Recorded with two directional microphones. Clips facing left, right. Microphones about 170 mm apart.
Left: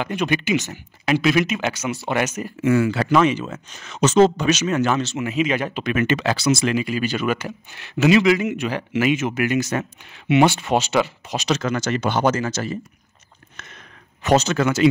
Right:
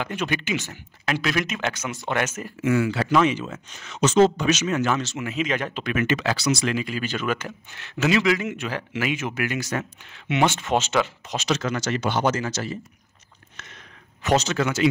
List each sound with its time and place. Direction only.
0.0 s speech: 15° left (ahead or behind)
2.6 s speech: 45° left (ahead or behind)
4.9 s speech: 25° left (ahead or behind)
5.3 s speech: 10° left (ahead or behind)
6.1 s speech: 25° left (ahead or behind)
6.8 s speech: 10° left (ahead or behind)
10.2 s speech: 10° left (ahead or behind)
11.6 s speech: 55° left (ahead or behind)
13.6 s sniff: 55° left (ahead or behind)
14.3 s speech: 50° left (ahead or behind)